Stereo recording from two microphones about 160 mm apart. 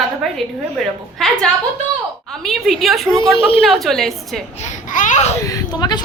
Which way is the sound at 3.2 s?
35° left (ahead or behind).